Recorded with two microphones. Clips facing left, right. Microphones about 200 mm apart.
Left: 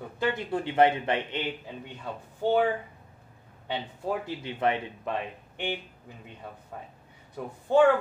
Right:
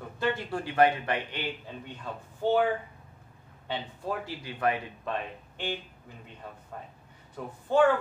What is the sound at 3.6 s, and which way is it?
A man's voice, 15° left (ahead or behind).